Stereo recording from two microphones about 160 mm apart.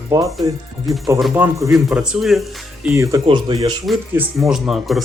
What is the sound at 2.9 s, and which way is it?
Speech, 20° right (ahead or behind).